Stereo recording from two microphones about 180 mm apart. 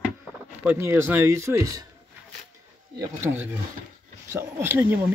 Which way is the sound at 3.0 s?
10° right (ahead or behind).